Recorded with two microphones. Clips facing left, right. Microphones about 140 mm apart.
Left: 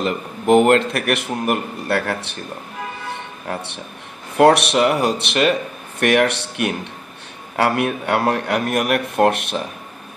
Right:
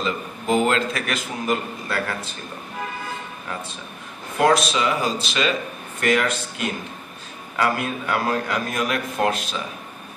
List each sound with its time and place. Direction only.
0.0 s a man's voice: 60° left (ahead or behind)
3.1 s a sound: 70° left (ahead or behind)
4.4 s a man's voice: 65° left (ahead or behind)